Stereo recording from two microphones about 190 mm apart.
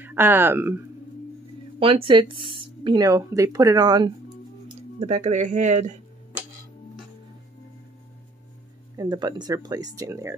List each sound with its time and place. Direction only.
0.0 s speech: 10° right (ahead or behind)
1.8 s speech: 30° right (ahead or behind)
5.0 s speech: 35° right (ahead or behind)
8.9 s speech: 20° right (ahead or behind)